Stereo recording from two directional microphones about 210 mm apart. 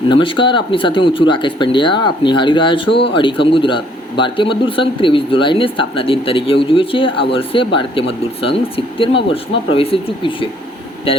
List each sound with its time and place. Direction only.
0.1 s speech: 25° left (ahead or behind)